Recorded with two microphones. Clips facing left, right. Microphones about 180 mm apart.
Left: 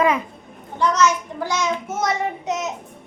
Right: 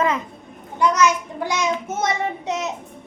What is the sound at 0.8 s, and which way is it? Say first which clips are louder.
A child's voice: right 1 dB; 15° right (ahead or behind).